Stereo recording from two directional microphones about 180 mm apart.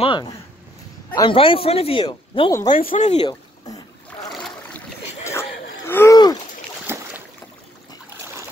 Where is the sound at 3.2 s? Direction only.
25° left (ahead or behind).